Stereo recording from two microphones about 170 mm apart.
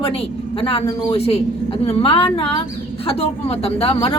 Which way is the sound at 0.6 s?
35° left (ahead or behind).